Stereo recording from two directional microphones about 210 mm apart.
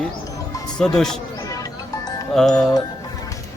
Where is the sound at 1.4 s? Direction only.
15° left (ahead or behind).